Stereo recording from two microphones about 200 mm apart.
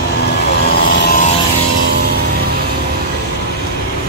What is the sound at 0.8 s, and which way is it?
Vehicle, 50° left (ahead or behind).